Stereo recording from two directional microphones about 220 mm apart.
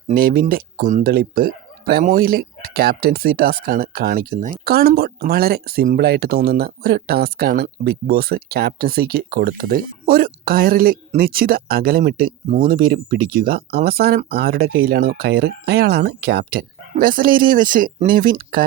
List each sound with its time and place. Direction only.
0.1 s speech: 40° right (ahead or behind)